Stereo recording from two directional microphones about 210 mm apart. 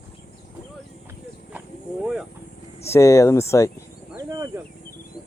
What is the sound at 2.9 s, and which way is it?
Speech, 15° left (ahead or behind).